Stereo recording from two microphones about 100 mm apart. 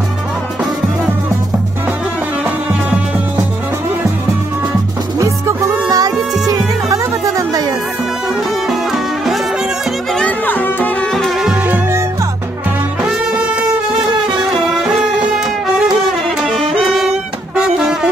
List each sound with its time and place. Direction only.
2.4 s music: 15° right (ahead or behind)
5.2 s music: 35° right (ahead or behind)
8.6 s music: centre (ahead or behind)
10.1 s music: 15° left (ahead or behind)
11.1 s music: centre (ahead or behind)
11.6 s music: 15° right (ahead or behind)
13.0 s music: 5° right (ahead or behind)
14.5 s music: centre (ahead or behind)